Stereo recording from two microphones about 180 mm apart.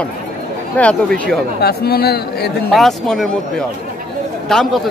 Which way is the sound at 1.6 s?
60° left (ahead or behind).